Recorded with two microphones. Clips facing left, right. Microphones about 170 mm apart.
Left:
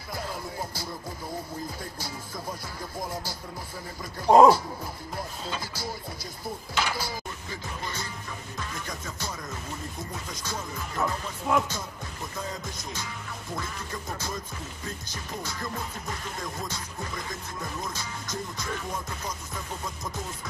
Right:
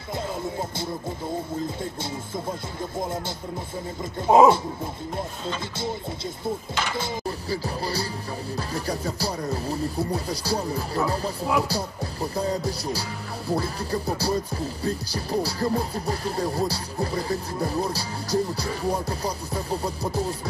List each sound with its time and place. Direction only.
0.1 s music: 25° right (ahead or behind)
1.8 s speech: 25° right (ahead or behind)
4.3 s speech: 5° right (ahead or behind)
6.7 s speech: 5° left (ahead or behind)
7.0 s music: 30° right (ahead or behind)